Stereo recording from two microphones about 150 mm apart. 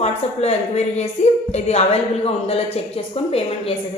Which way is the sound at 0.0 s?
45° left (ahead or behind).